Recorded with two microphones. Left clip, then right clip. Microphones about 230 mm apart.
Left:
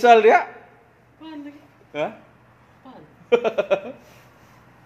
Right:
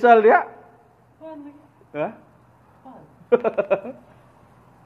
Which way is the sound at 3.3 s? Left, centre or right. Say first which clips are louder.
Even; centre.